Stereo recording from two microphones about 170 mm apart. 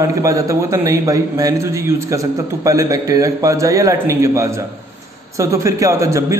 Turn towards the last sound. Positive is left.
turn(degrees=-15)  # may be behind; listen again after turning